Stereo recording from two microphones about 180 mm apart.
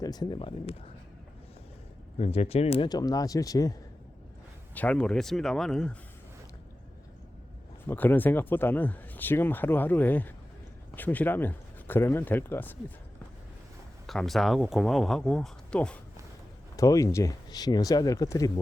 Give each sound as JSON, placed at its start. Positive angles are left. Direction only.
{"t": 0.0, "sound": "speech", "side_deg": 20}
{"t": 2.1, "sound": "speech", "side_deg": 35}
{"t": 4.7, "sound": "speech", "side_deg": 10}
{"t": 7.9, "sound": "speech", "side_deg": 10}
{"t": 14.1, "sound": "speech", "side_deg": 0}
{"t": 16.7, "sound": "speech", "side_deg": 20}